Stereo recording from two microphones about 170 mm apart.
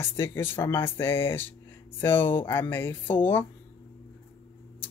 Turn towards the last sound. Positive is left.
turn(degrees=10)  # may be behind; listen again after turning